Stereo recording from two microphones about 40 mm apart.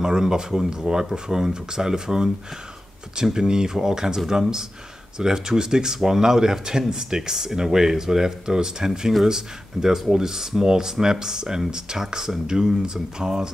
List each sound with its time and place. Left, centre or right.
0.0 s speech: centre